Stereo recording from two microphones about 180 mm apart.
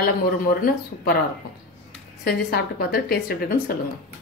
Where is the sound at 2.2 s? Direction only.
55° left (ahead or behind).